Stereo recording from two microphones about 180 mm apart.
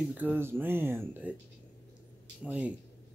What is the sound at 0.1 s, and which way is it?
Speech, 10° right (ahead or behind).